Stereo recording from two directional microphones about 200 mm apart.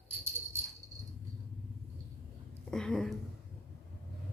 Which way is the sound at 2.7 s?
5° left (ahead or behind).